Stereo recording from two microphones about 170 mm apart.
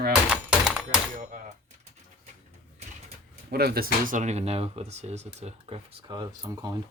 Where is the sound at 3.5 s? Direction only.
65° right (ahead or behind).